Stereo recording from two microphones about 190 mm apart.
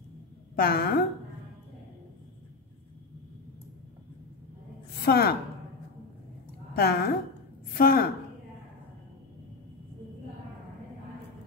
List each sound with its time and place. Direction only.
0.6 s a woman's voice: 50° left (ahead or behind)
5.0 s a woman's voice: 55° left (ahead or behind)
6.7 s a woman's voice: 55° left (ahead or behind)